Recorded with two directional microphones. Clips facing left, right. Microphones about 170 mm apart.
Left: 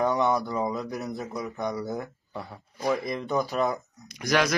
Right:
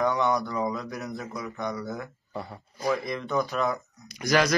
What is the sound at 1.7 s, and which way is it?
Speech, 20° left (ahead or behind).